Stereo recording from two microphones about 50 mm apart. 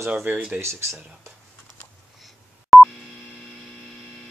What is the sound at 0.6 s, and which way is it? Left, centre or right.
Speech, right.